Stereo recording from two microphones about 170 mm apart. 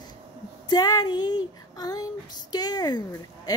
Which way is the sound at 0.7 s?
20° left (ahead or behind).